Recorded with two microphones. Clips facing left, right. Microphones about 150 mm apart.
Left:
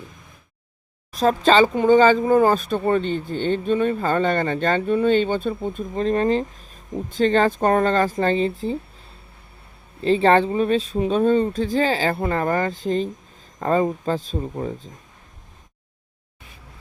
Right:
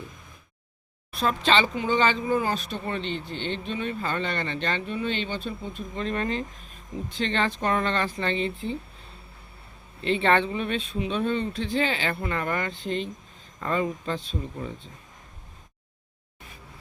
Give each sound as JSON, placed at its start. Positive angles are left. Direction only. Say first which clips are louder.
{"t": 1.1, "sound": "speech", "louder": "left 7 dB", "side_deg": 40}
{"t": 10.0, "sound": "speech", "louder": "left 6 dB", "side_deg": 35}